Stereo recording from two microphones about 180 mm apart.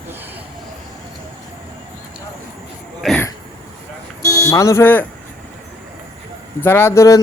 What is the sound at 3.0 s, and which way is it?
Throat clearing, 5° left (ahead or behind).